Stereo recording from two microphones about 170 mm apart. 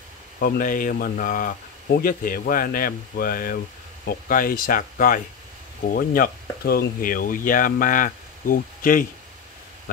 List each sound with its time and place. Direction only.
0.4 s speech: 55° left (ahead or behind)